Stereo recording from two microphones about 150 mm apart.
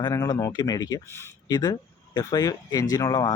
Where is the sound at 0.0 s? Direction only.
25° left (ahead or behind).